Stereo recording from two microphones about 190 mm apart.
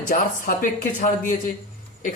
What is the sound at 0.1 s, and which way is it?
A man's voice, 45° left (ahead or behind).